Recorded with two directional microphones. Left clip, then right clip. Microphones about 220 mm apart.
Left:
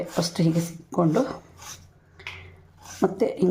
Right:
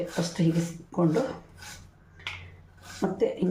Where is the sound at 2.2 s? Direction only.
40° left (ahead or behind).